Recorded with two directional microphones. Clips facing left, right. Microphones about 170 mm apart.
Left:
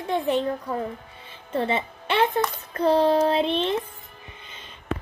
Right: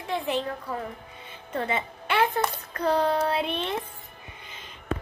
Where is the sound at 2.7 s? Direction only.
25° left (ahead or behind).